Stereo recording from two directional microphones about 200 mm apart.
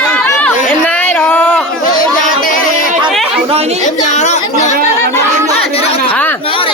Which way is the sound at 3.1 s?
Centre (ahead or behind).